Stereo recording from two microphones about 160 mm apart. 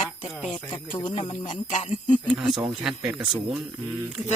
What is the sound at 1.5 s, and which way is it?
Speech, 50° left (ahead or behind).